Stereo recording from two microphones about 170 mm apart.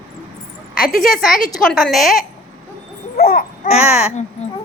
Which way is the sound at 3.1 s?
65° left (ahead or behind).